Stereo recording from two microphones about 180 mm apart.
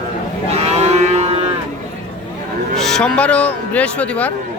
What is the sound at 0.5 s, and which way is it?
Livestock, 35° right (ahead or behind).